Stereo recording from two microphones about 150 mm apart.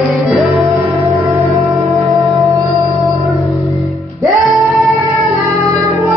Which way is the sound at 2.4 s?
20° right (ahead or behind).